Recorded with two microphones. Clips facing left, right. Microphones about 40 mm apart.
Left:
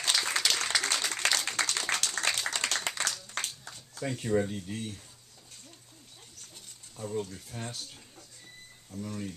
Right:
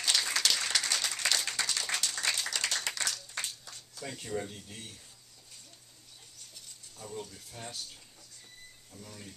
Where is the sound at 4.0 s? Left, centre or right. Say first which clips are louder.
Left 8 dB; left.